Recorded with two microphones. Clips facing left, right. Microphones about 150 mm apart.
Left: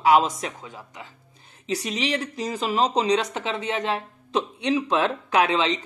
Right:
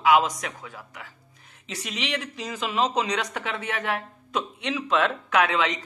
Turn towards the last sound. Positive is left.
turn(degrees=25)  # may be behind; listen again after turning